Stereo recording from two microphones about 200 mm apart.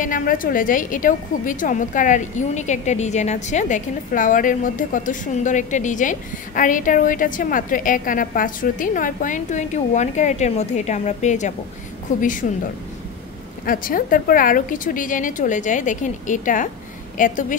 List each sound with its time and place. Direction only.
0.0 s a woman's voice: 40° left (ahead or behind)
13.7 s a woman's voice: 45° left (ahead or behind)